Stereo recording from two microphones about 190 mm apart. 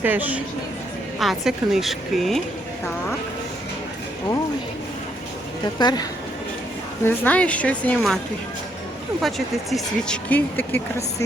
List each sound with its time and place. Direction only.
0.0 s a woman's voice: 10° right (ahead or behind)
5.8 s speech: 20° left (ahead or behind)
7.0 s speech: 5° left (ahead or behind)
9.2 s speech: centre (ahead or behind)